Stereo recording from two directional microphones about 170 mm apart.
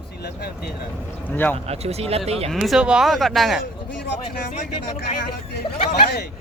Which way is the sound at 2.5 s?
Centre (ahead or behind).